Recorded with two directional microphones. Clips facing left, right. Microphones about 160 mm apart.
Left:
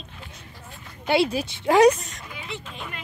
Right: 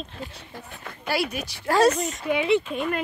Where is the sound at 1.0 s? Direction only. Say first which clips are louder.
Left 5 dB; 25° left (ahead or behind).